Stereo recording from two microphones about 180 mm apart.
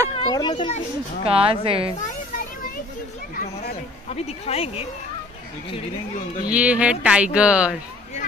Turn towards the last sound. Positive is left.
turn(degrees=-5)  # may be behind; listen again after turning